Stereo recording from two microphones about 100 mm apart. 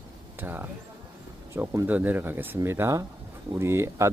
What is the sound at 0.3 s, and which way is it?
Speech, 20° right (ahead or behind).